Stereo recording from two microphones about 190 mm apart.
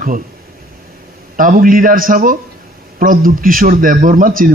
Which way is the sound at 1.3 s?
50° right (ahead or behind).